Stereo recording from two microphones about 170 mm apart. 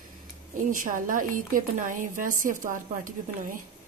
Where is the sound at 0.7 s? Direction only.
50° right (ahead or behind).